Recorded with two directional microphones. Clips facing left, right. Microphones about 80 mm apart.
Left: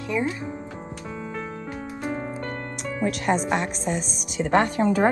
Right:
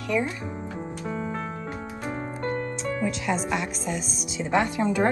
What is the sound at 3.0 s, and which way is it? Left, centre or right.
Speech, left.